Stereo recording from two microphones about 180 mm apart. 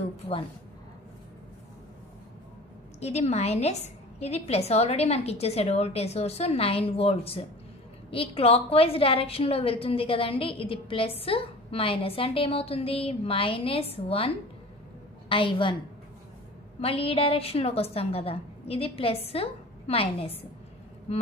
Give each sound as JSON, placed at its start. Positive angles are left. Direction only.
{"t": 3.0, "sound": "a woman's voice", "side_deg": 35}
{"t": 16.8, "sound": "a woman's voice", "side_deg": 30}